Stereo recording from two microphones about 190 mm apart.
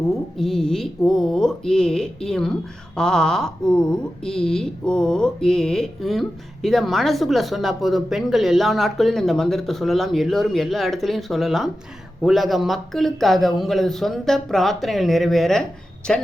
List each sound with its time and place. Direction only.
0.3 s speech: centre (ahead or behind)